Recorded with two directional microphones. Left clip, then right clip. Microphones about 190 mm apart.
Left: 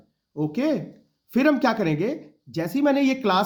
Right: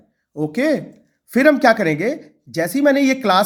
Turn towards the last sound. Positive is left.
turn(degrees=-20)  # may be behind; listen again after turning